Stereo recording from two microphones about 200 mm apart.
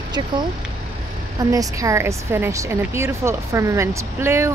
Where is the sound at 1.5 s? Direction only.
15° right (ahead or behind).